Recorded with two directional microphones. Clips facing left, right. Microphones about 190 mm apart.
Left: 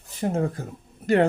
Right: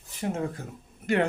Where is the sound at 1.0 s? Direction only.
35° left (ahead or behind).